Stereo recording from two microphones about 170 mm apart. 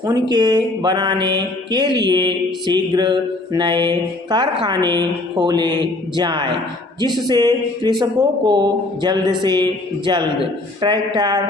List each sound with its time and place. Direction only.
0.0 s mantra: 25° right (ahead or behind)